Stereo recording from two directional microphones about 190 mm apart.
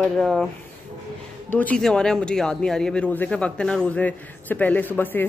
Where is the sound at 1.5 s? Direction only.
5° left (ahead or behind).